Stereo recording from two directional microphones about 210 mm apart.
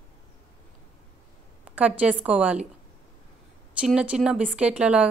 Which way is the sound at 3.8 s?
5° right (ahead or behind).